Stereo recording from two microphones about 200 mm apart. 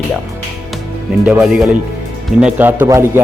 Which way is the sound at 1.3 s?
5° right (ahead or behind).